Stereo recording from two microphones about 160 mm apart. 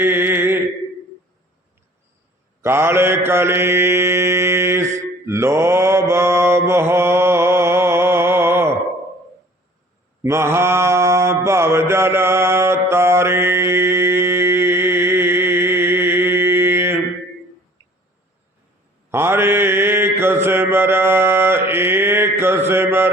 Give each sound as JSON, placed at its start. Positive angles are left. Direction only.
{"t": 0.0, "sound": "mantra", "side_deg": -15}
{"t": 2.6, "sound": "mantra", "side_deg": -15}
{"t": 10.2, "sound": "mantra", "side_deg": -15}
{"t": 19.1, "sound": "mantra", "side_deg": -15}